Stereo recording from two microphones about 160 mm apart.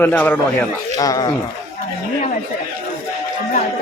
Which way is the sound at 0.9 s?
20° left (ahead or behind).